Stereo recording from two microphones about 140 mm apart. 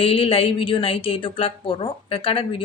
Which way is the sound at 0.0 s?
40° left (ahead or behind).